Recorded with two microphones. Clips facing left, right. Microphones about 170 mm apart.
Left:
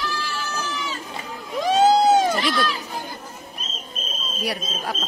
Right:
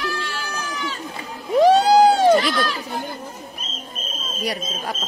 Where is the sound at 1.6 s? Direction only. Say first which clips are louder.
Right 4 dB; 70° right (ahead or behind).